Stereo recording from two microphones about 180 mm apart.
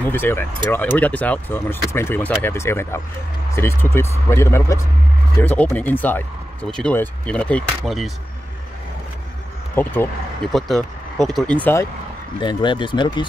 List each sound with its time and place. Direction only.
0.0 s speech: 10° left (ahead or behind)
9.8 s speech: 10° left (ahead or behind)
10.5 s speech: centre (ahead or behind)
12.4 s speech: 25° left (ahead or behind)